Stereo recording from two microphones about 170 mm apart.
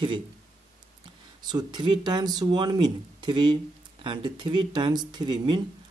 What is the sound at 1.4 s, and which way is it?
Speech, 25° right (ahead or behind).